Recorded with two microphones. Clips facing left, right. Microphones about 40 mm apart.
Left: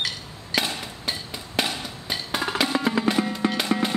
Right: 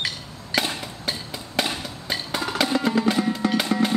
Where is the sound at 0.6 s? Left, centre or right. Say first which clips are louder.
Right 1 dB; centre.